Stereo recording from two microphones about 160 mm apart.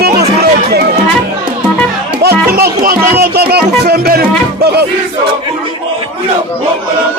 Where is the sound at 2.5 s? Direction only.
70° right (ahead or behind).